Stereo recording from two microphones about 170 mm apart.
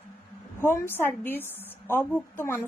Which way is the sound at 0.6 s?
15° left (ahead or behind).